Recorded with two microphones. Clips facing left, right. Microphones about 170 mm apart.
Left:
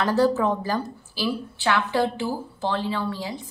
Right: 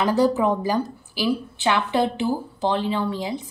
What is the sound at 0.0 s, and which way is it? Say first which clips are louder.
Speech: right 1 dB; 15° right (ahead or behind).